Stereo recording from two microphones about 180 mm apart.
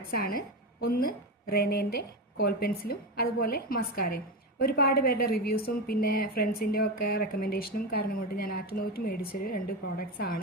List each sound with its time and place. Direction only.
0.1 s a woman's voice: 55° left (ahead or behind)